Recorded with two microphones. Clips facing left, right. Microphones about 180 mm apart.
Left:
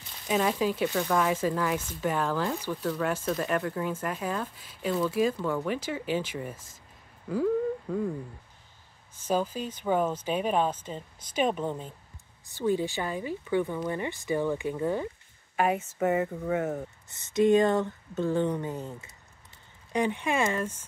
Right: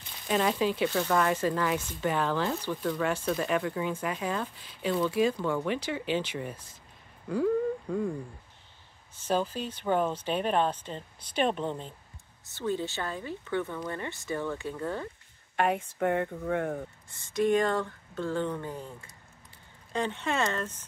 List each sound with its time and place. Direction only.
0.3 s speech: 5° left (ahead or behind)
7.2 s a sound: centre (ahead or behind)
9.1 s speech: 10° left (ahead or behind)
17.1 s speech: 20° left (ahead or behind)